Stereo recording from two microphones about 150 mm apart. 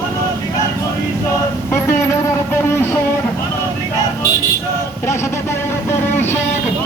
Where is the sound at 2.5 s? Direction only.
15° left (ahead or behind).